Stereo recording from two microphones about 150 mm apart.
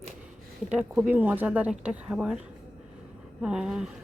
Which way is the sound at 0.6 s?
5° right (ahead or behind).